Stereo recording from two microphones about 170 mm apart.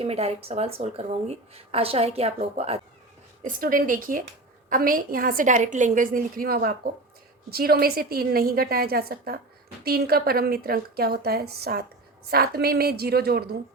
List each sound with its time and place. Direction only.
0.0 s a woman's voice: 35° right (ahead or behind)
3.4 s a woman's voice: 55° right (ahead or behind)